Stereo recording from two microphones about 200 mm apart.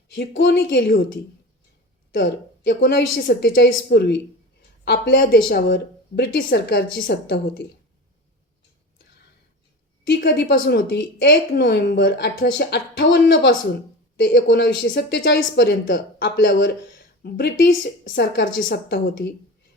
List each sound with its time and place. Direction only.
0.1 s speech: 55° left (ahead or behind)
2.1 s speech: 60° left (ahead or behind)
10.2 s a woman's voice: 50° left (ahead or behind)
10.5 s speech: 60° left (ahead or behind)